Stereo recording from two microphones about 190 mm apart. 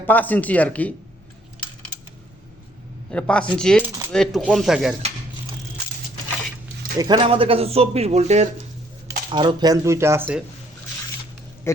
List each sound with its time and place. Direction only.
0.1 s speech: 10° left (ahead or behind)
3.1 s speech: 5° left (ahead or behind)
7.0 s a man's voice: 25° right (ahead or behind)
9.0 s speech: 25° right (ahead or behind)